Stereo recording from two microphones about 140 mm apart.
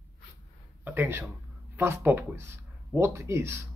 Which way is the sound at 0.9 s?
15° right (ahead or behind).